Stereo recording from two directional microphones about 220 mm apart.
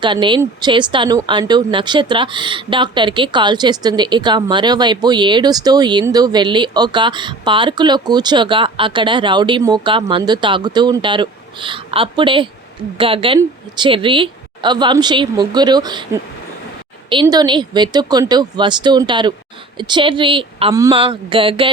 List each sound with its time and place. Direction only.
0.0 s speech: 20° right (ahead or behind)